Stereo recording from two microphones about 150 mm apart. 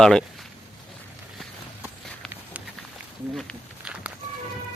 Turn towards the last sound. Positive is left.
turn(degrees=-10)  # may be behind; listen again after turning